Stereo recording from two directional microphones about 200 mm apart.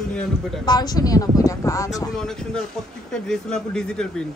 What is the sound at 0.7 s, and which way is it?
Speech, 20° left (ahead or behind).